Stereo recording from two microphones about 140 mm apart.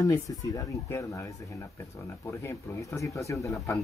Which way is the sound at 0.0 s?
25° left (ahead or behind).